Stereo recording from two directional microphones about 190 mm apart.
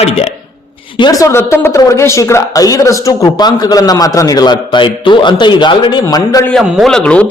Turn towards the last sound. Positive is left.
turn(degrees=5)  # may be behind; listen again after turning